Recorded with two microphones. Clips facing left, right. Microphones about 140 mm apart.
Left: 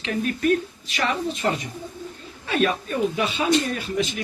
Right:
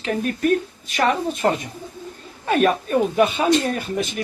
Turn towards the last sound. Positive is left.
turn(degrees=-50)  # may be behind; listen again after turning